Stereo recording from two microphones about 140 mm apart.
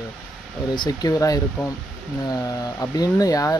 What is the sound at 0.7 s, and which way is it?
Speech, 30° left (ahead or behind).